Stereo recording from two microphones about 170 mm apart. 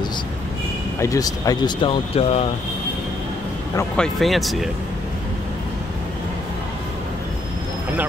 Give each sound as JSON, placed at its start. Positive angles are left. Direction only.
{"t": 0.9, "sound": "speech", "side_deg": 20}
{"t": 3.9, "sound": "speech", "side_deg": 0}